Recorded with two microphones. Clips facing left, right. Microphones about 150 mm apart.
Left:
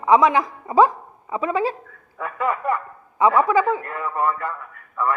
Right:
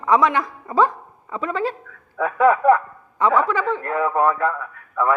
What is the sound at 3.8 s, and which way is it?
A man's voice, 90° right.